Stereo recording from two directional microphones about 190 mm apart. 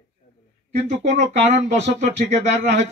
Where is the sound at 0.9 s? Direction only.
35° right (ahead or behind).